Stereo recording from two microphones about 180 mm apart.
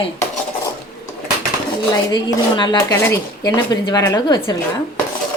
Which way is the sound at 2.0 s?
25° left (ahead or behind).